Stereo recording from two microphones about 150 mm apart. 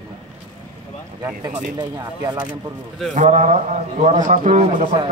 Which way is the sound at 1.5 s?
50° right (ahead or behind).